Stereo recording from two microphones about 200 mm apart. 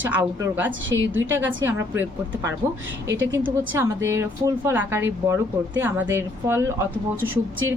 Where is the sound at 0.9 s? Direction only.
75° right (ahead or behind).